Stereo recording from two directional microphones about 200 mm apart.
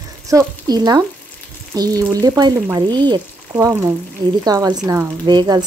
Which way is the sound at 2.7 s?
20° right (ahead or behind).